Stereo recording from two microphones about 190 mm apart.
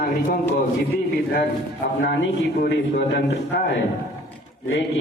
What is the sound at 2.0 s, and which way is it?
A man's voice, 65° left (ahead or behind).